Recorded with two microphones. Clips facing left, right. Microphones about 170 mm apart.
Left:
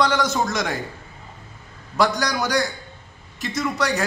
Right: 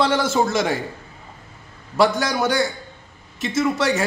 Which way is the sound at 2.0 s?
25° right (ahead or behind).